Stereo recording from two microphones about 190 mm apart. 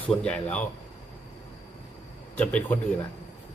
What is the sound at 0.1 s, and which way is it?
Speech, 5° left (ahead or behind).